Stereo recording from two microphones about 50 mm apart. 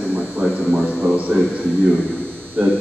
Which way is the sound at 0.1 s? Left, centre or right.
Right.